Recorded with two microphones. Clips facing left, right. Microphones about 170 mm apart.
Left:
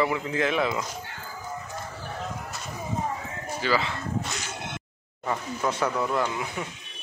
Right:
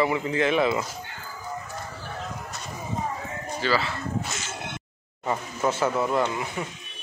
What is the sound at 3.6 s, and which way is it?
Speech, 15° left (ahead or behind).